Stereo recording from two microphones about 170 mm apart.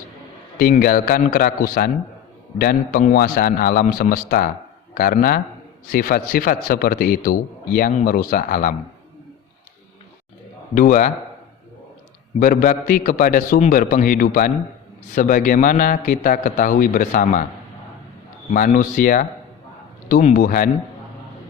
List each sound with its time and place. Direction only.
0.6 s a man's voice: 60° left (ahead or behind)
10.8 s a man's voice: 50° left (ahead or behind)
12.4 s a man's voice: 55° left (ahead or behind)
18.5 s a man's voice: 50° left (ahead or behind)